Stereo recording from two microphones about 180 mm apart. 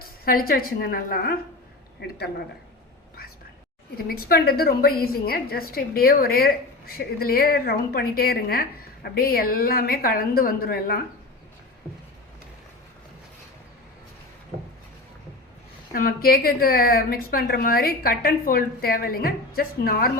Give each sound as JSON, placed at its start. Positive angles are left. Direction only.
{"t": 0.0, "sound": "a woman's voice", "side_deg": 55}
{"t": 3.9, "sound": "a woman's voice", "side_deg": 55}
{"t": 15.9, "sound": "a woman's voice", "side_deg": 55}